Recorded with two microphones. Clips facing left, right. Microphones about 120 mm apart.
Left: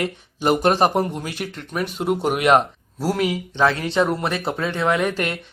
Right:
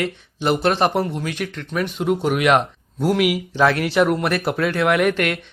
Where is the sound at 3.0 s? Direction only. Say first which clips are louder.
Right 3 dB; centre (ahead or behind).